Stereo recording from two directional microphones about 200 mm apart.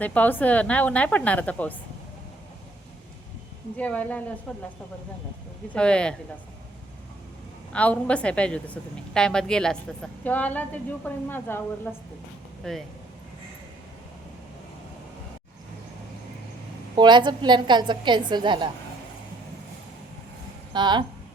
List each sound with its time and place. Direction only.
0.0 s a woman's voice: 10° left (ahead or behind)
3.8 s a woman's voice: 5° left (ahead or behind)
5.7 s a woman's voice: 5° left (ahead or behind)
7.7 s a woman's voice: 5° left (ahead or behind)
16.9 s a woman's voice: 20° right (ahead or behind)
20.7 s a woman's voice: 20° right (ahead or behind)